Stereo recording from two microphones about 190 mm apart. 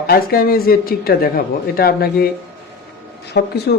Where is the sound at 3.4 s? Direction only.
60° left (ahead or behind).